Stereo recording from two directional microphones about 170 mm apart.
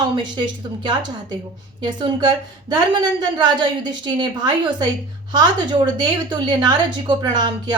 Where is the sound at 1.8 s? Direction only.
25° right (ahead or behind).